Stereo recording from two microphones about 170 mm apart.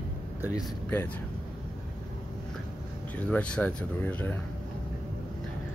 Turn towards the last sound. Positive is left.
turn(degrees=10)  # may be behind; listen again after turning